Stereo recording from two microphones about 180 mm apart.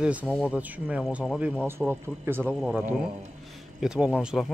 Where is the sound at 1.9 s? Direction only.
10° right (ahead or behind).